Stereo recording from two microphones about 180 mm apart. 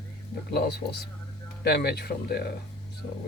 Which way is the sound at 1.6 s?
60° left (ahead or behind).